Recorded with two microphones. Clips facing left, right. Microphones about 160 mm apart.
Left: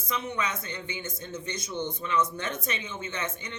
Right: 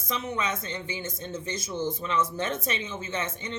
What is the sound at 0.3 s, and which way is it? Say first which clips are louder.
Speech: right 2 dB; 25° right (ahead or behind).